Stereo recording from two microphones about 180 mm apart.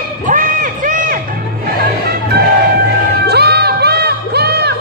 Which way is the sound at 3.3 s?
65° right (ahead or behind).